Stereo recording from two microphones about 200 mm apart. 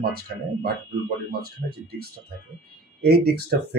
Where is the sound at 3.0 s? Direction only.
50° right (ahead or behind).